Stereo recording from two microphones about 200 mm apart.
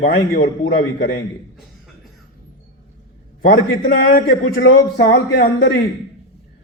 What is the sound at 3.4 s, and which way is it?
A man's voice, 55° left (ahead or behind).